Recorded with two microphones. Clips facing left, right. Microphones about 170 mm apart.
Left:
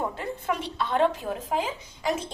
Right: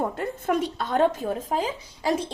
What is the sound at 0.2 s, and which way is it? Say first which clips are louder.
A woman's voice: right 5 dB; 45° right (ahead or behind).